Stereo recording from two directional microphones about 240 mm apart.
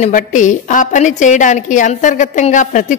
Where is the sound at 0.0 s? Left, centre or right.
Left.